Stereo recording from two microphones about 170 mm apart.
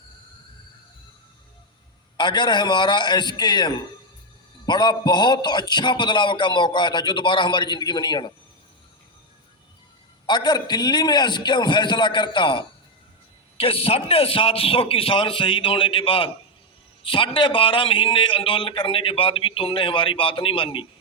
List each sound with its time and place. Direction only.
2.1 s a man's voice: 25° left (ahead or behind)
10.2 s a man's voice: 25° left (ahead or behind)